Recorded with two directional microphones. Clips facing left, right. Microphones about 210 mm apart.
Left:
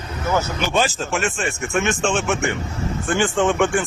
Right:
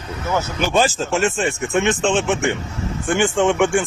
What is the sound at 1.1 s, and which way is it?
Speech, 30° right (ahead or behind).